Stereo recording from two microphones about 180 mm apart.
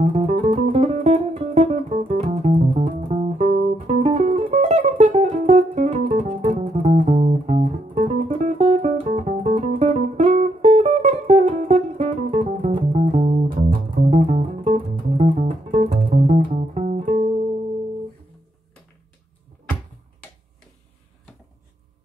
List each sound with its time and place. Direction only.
0.0 s music: 30° right (ahead or behind)